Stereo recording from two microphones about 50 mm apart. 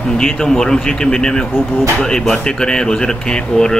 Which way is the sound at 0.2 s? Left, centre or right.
Centre.